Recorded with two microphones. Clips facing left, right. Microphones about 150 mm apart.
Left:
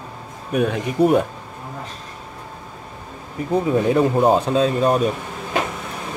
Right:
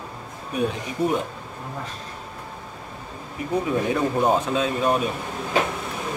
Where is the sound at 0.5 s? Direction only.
65° left (ahead or behind).